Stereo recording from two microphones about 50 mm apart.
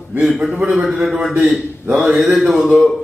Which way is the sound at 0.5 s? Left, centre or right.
Right.